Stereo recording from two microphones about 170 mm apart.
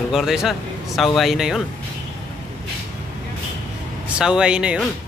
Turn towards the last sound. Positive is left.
turn(degrees=-5)  # may be behind; listen again after turning